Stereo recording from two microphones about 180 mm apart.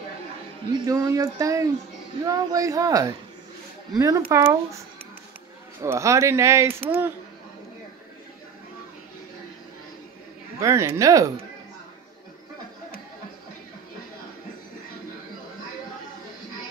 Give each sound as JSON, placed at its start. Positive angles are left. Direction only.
{"t": 0.7, "sound": "speech", "side_deg": -20}
{"t": 10.6, "sound": "speech", "side_deg": -15}